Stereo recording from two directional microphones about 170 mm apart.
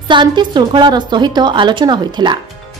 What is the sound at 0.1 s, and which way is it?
A woman's voice, 25° right (ahead or behind).